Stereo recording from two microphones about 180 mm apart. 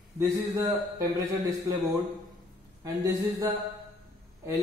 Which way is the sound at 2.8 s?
20° right (ahead or behind).